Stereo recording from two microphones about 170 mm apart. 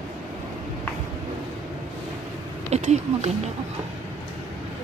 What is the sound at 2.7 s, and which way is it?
Speech, 40° right (ahead or behind).